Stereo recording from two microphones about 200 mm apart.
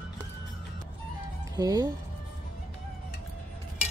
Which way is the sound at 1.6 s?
20° right (ahead or behind).